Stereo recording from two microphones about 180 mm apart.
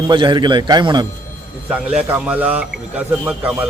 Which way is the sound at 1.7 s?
5° right (ahead or behind).